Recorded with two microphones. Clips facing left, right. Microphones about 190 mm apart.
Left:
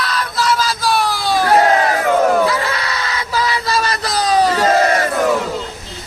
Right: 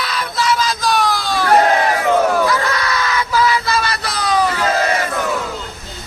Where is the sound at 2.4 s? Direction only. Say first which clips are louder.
Right 1 dB; 25° left (ahead or behind).